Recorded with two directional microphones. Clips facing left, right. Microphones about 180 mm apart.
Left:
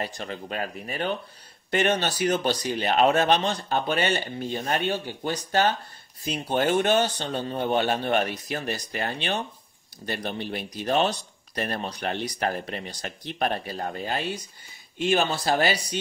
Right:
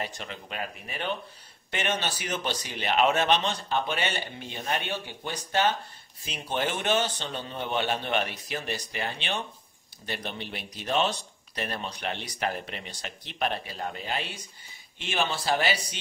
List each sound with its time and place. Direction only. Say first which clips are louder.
0.0 s speech: left 4 dB; 40° left (ahead or behind)